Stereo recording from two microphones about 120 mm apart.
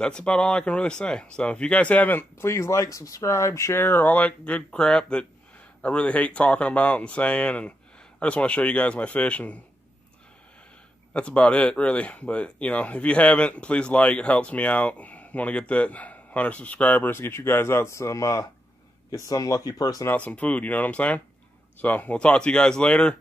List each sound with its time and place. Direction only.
0.0 s speech: 10° left (ahead or behind)
11.1 s speech: 10° left (ahead or behind); by 20.1 s 30° left (ahead or behind)
20.1 s speech: 10° left (ahead or behind)